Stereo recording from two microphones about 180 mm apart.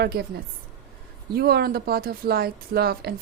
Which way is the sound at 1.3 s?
60° right (ahead or behind).